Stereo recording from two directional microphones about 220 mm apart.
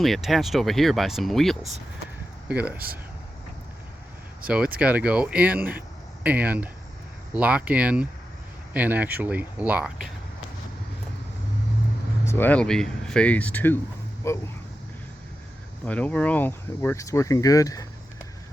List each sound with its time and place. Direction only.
0.0 s speech: centre (ahead or behind)
2.7 s speech: 45° right (ahead or behind)
4.4 s speech: 5° right (ahead or behind)
12.2 s speech: 10° left (ahead or behind)
15.9 s speech: 5° left (ahead or behind)